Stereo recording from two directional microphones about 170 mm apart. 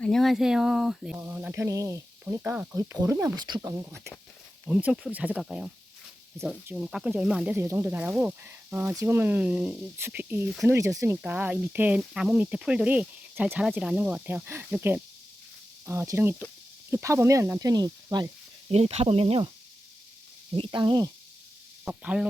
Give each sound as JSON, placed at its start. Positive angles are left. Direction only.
{"t": 0.0, "sound": "speech", "side_deg": 0}
{"t": 18.7, "sound": "speech", "side_deg": -40}
{"t": 20.7, "sound": "speech", "side_deg": -25}
{"t": 21.8, "sound": "speech", "side_deg": -5}